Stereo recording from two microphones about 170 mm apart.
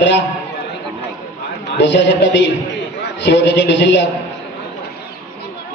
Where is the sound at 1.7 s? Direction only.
90° left.